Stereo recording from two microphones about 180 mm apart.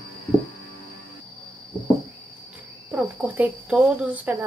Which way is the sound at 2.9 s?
5° right (ahead or behind).